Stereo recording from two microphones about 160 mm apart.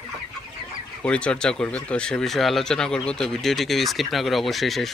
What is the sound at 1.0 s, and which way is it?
Speech, 5° left (ahead or behind).